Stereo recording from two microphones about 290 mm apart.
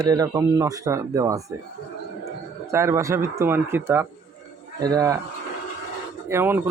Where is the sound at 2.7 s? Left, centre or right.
Centre.